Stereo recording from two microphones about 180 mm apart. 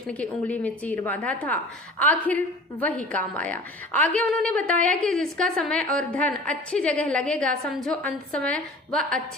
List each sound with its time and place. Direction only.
0.1 s a woman's voice: 5° left (ahead or behind)